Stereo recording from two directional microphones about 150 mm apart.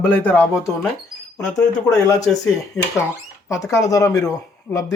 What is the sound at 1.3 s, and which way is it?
Speech, 25° left (ahead or behind).